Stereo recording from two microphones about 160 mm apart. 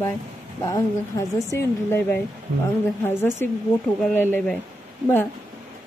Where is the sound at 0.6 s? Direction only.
25° left (ahead or behind).